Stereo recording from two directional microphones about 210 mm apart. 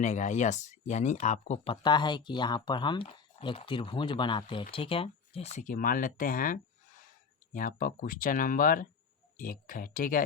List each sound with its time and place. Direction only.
0.0 s speech: 35° left (ahead or behind)